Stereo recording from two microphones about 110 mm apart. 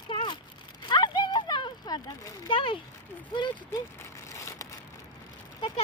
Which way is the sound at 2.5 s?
50° left (ahead or behind).